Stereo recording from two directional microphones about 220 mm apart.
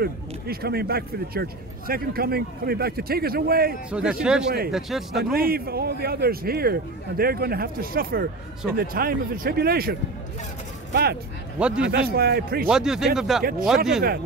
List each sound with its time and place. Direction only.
0.0 s speech: 45° right (ahead or behind)
3.9 s speech: 5° right (ahead or behind)
5.3 s speech: 45° right (ahead or behind)
11.6 s speech: 5° right (ahead or behind)
11.9 s speech: 45° right (ahead or behind)
12.6 s speech: 5° right (ahead or behind)
13.4 s speech: 40° right (ahead or behind)